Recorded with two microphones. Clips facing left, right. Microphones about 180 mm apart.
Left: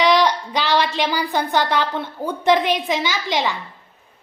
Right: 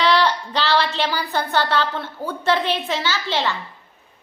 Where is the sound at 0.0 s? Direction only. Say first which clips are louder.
Left 2 dB; 15° left (ahead or behind).